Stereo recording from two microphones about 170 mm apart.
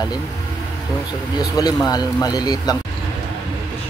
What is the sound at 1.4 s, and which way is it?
Speech, 20° left (ahead or behind).